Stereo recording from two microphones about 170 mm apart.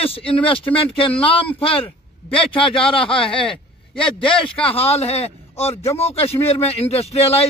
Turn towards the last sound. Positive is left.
turn(degrees=35)  # may be behind; listen again after turning